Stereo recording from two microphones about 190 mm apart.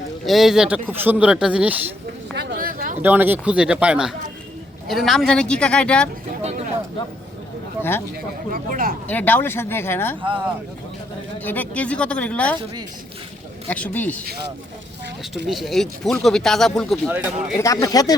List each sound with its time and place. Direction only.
0.3 s speech: centre (ahead or behind)
2.3 s a sound: 60° right (ahead or behind)
3.0 s speech: 10° right (ahead or behind)
7.8 s a man's voice: 10° left (ahead or behind)
8.5 s speech: 50° right (ahead or behind)
9.0 s speech: 10° left (ahead or behind)
10.2 s speech: 25° right (ahead or behind)
11.4 s speech: 10° left (ahead or behind)
13.7 s speech: 10° left (ahead or behind)
15.4 s speech: centre (ahead or behind)
17.6 s speech: 15° left (ahead or behind)